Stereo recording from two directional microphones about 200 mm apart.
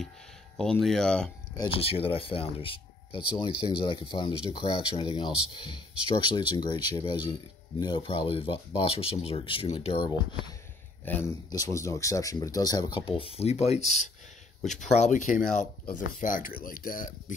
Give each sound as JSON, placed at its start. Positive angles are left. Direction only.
{"t": 0.6, "sound": "speech", "side_deg": 0}
{"t": 1.6, "sound": "speech", "side_deg": 30}
{"t": 11.1, "sound": "speech", "side_deg": 15}